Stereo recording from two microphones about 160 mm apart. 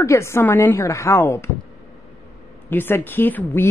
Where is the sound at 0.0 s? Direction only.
15° left (ahead or behind).